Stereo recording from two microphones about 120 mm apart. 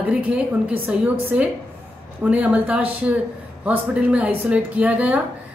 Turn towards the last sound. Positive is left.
turn(degrees=-10)  # may be behind; listen again after turning